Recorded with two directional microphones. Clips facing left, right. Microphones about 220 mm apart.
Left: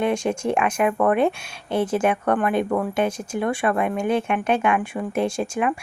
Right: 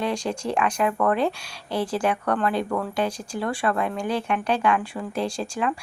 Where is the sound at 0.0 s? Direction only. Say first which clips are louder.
Left 4 dB; 25° left (ahead or behind).